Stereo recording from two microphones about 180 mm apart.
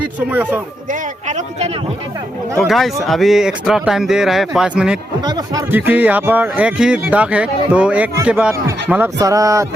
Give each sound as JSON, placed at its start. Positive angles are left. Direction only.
{"t": 0.3, "sound": "speech", "side_deg": -10}
{"t": 0.9, "sound": "speech", "side_deg": -40}
{"t": 2.6, "sound": "speech", "side_deg": 0}
{"t": 5.2, "sound": "speech", "side_deg": -20}
{"t": 5.7, "sound": "speech", "side_deg": -10}